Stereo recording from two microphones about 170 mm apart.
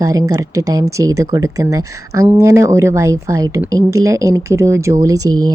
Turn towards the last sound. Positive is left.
turn(degrees=-20)  # may be behind; listen again after turning